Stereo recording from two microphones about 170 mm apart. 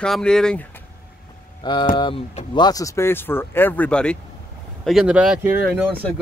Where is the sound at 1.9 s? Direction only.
30° left (ahead or behind).